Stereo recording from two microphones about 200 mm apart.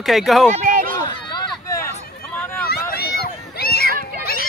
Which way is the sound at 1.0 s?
20° left (ahead or behind).